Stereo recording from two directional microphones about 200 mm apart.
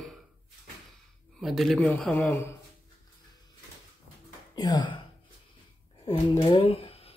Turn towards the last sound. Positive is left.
turn(degrees=30)  # may be behind; listen again after turning